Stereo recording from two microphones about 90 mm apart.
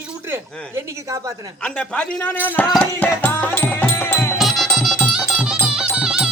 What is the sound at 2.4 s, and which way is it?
Music, 20° left (ahead or behind).